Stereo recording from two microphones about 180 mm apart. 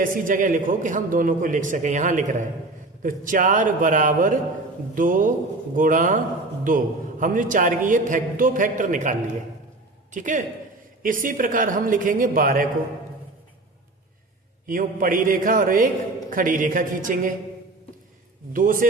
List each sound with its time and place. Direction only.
0.0 s a man's voice: 50° right (ahead or behind)
14.7 s a man's voice: 50° right (ahead or behind)
18.5 s a man's voice: 50° right (ahead or behind)